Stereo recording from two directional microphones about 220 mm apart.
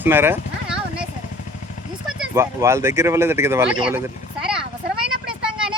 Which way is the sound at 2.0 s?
10° right (ahead or behind).